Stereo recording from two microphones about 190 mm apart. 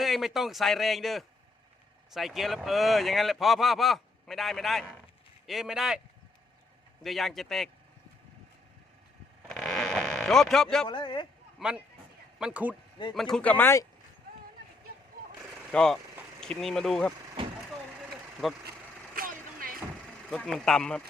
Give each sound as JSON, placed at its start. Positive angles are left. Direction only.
{"t": 0.0, "sound": "speech", "side_deg": 0}
{"t": 7.0, "sound": "speech", "side_deg": 0}
{"t": 9.5, "sound": "vehicle", "side_deg": 0}
{"t": 10.8, "sound": "a man's voice", "side_deg": 25}
{"t": 11.6, "sound": "speech", "side_deg": 0}
{"t": 15.7, "sound": "speech", "side_deg": 5}
{"t": 18.4, "sound": "speech", "side_deg": 0}
{"t": 19.1, "sound": "vehicle", "side_deg": -50}
{"t": 20.3, "sound": "speech", "side_deg": 5}